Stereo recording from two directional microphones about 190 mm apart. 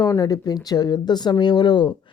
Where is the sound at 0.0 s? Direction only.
20° left (ahead or behind).